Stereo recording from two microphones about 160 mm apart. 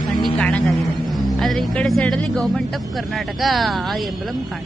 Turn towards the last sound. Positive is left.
turn(degrees=0)  # may be behind; listen again after turning